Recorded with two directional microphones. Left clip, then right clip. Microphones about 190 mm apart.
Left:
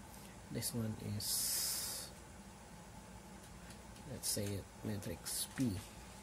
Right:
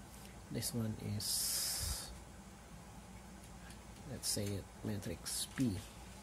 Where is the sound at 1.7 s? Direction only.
10° right (ahead or behind).